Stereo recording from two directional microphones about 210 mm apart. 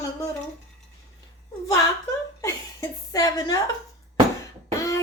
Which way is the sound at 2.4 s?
15° left (ahead or behind).